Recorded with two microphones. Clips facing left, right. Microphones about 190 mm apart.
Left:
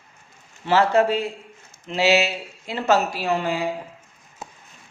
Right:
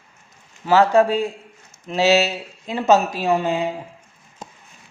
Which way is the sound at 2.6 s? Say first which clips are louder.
Right 4 dB; 20° right (ahead or behind).